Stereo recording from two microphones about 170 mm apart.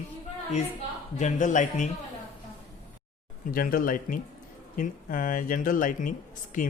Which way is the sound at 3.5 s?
55° left (ahead or behind).